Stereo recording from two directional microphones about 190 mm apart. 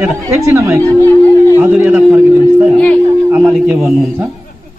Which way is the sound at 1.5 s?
10° right (ahead or behind).